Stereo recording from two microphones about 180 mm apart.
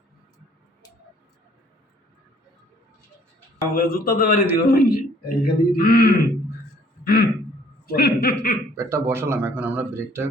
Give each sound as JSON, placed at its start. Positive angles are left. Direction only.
{"t": 3.8, "sound": "speech", "side_deg": 55}
{"t": 7.0, "sound": "a sound", "side_deg": 60}
{"t": 7.9, "sound": "speech", "side_deg": 60}
{"t": 8.7, "sound": "speech", "side_deg": -15}